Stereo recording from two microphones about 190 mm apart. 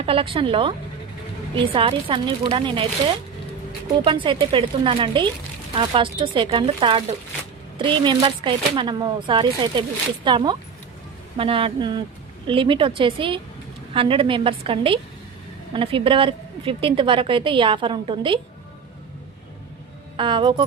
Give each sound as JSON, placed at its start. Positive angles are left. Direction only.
{"t": 0.0, "sound": "a woman's voice", "side_deg": -30}
{"t": 1.7, "sound": "a woman's voice", "side_deg": -30}
{"t": 3.9, "sound": "a woman's voice", "side_deg": -25}
{"t": 20.1, "sound": "a woman's voice", "side_deg": -25}